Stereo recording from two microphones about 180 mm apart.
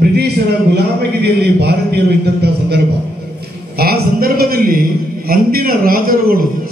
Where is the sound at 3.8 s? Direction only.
55° right (ahead or behind).